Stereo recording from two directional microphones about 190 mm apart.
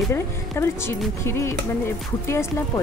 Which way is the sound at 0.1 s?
15° left (ahead or behind).